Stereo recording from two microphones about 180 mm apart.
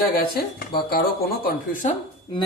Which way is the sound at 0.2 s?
60° left (ahead or behind).